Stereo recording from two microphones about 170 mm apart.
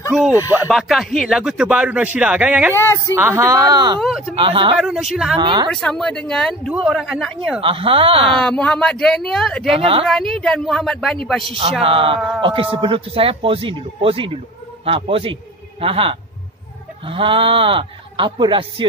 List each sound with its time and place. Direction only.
0.5 s speech: 10° right (ahead or behind)
0.7 s speech: centre (ahead or behind)
2.7 s speech: 15° left (ahead or behind)
3.2 s speech: 15° right (ahead or behind)
4.0 s speech: centre (ahead or behind)
4.4 s speech: 30° right (ahead or behind)
4.7 s speech: 5° right (ahead or behind)
5.4 s speech: 25° right (ahead or behind)
5.7 s speech: 5° left (ahead or behind)
7.6 s speech: 30° right (ahead or behind)
8.4 s speech: 5° left (ahead or behind)
9.8 s speech: 35° right (ahead or behind)
10.0 s speech: centre (ahead or behind)
11.8 s speech: 30° right (ahead or behind)